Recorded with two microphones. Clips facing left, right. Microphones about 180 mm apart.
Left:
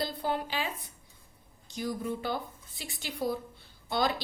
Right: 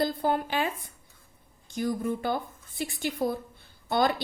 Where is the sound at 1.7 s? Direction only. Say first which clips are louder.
Right 5 dB; 50° right (ahead or behind).